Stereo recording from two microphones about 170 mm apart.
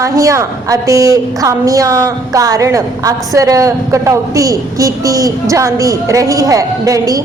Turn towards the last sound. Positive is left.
turn(degrees=-20)  # may be behind; listen again after turning